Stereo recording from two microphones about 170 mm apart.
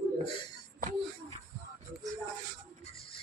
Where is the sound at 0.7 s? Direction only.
50° right (ahead or behind).